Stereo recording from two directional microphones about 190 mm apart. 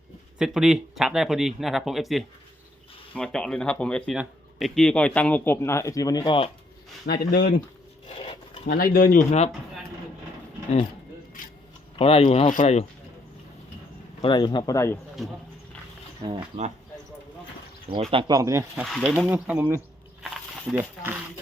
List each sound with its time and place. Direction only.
0.3 s speech: centre (ahead or behind); by 6.5 s 25° left (ahead or behind)
7.0 s speech: 55° left (ahead or behind)
8.2 s filing: 25° left (ahead or behind)
8.7 s speech: 50° left (ahead or behind)
11.9 s speech: 30° left (ahead or behind)
14.2 s speech: 25° left (ahead or behind)
16.2 s speech: 30° right (ahead or behind)
17.9 s speech: 30° right (ahead or behind)
18.8 s speech: centre (ahead or behind)